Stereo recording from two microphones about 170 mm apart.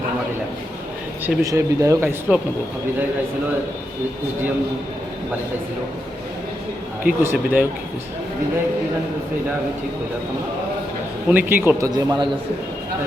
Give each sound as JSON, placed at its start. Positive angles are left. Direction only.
{"t": 1.2, "sound": "speech", "side_deg": -20}
{"t": 7.0, "sound": "speech", "side_deg": -10}
{"t": 11.3, "sound": "speech", "side_deg": -10}
{"t": 11.9, "sound": "a man's voice", "side_deg": -25}